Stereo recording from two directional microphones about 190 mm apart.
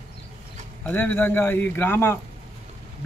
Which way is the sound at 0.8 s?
10° left (ahead or behind).